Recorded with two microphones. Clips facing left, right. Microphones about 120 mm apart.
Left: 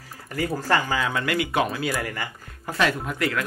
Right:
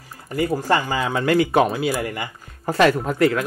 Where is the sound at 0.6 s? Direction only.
15° right (ahead or behind).